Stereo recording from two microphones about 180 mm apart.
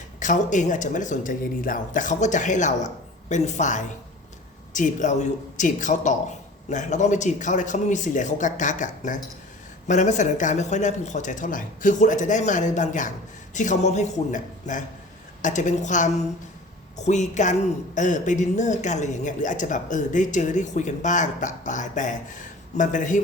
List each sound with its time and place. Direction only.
0.2 s a man's voice: 45° left (ahead or behind)